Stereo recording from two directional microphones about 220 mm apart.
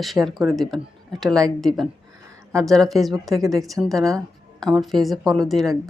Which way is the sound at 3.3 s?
15° right (ahead or behind).